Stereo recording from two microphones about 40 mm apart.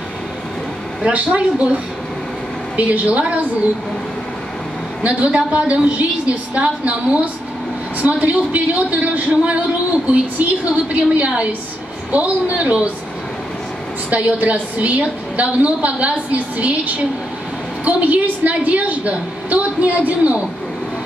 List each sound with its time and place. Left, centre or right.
1.1 s a woman's voice: right
5.0 s a woman's voice: right
14.1 s a woman's voice: right